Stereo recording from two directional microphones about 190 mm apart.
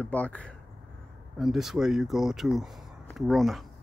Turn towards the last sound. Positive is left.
turn(degrees=0)  # may be behind; listen again after turning